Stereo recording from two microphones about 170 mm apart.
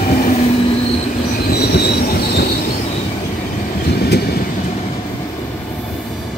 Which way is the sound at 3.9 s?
70° left (ahead or behind).